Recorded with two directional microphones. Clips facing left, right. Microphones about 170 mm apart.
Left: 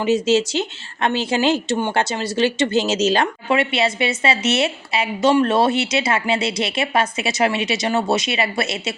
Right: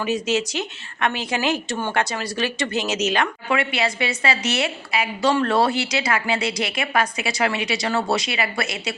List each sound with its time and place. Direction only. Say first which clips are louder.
0.0 s a woman's voice: left 5 dB; 25° left (ahead or behind)